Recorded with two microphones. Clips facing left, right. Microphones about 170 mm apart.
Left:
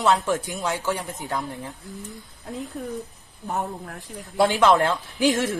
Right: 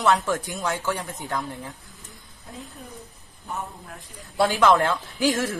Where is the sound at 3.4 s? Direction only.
60° left (ahead or behind).